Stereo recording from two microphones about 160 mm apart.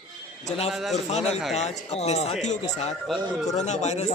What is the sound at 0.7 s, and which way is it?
Speech, centre (ahead or behind).